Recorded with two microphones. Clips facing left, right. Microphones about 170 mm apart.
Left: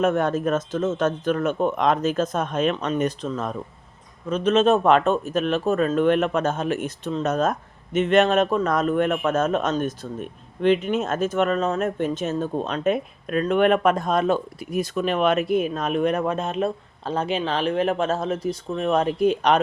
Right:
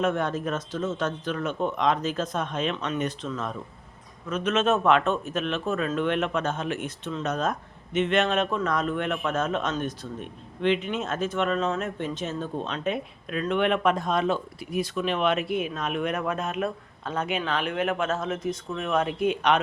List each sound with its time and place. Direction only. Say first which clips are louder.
0.0 s a man's voice: left 5 dB; 45° left (ahead or behind)